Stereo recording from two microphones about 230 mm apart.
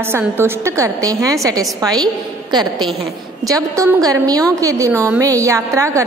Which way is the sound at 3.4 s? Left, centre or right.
Centre.